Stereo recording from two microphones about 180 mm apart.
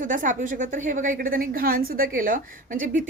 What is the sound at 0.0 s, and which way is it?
A woman's voice, 45° right (ahead or behind).